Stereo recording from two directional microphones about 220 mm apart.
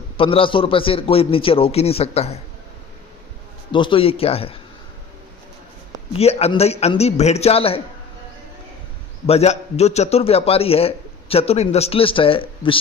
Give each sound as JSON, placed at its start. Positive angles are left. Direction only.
{"t": 0.2, "sound": "a man's voice", "side_deg": 25}
{"t": 3.7, "sound": "a man's voice", "side_deg": 25}
{"t": 6.1, "sound": "a man's voice", "side_deg": 25}
{"t": 9.2, "sound": "a man's voice", "side_deg": 30}